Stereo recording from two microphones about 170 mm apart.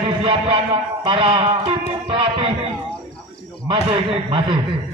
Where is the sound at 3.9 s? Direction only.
30° right (ahead or behind).